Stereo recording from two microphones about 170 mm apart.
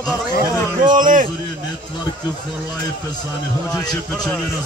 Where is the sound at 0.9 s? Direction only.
50° right (ahead or behind).